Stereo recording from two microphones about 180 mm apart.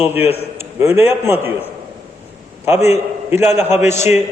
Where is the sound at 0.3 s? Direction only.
15° right (ahead or behind).